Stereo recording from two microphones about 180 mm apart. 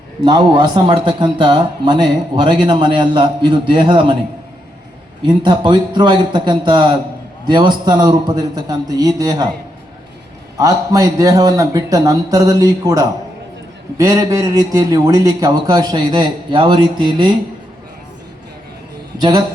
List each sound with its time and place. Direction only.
0.2 s a man's voice: 25° right (ahead or behind)
5.2 s a man's voice: 25° right (ahead or behind)
10.6 s a man's voice: 20° right (ahead or behind)